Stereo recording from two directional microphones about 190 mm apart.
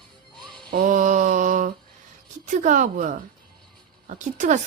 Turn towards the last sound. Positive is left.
turn(degrees=-40)  # may be behind; listen again after turning